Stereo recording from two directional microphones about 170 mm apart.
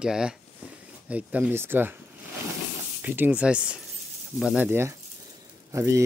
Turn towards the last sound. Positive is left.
turn(degrees=-15)  # may be behind; listen again after turning